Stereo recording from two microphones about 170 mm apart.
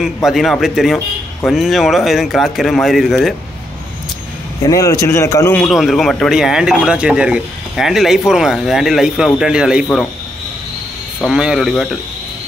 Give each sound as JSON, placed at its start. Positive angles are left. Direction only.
{"t": 0.0, "sound": "a man's voice", "side_deg": 0}
{"t": 4.6, "sound": "a man's voice", "side_deg": 20}
{"t": 5.6, "sound": "a man's voice", "side_deg": 0}
{"t": 11.2, "sound": "a man's voice", "side_deg": -5}